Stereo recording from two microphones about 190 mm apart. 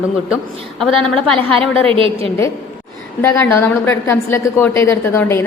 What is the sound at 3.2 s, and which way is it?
A woman's voice, 10° left (ahead or behind).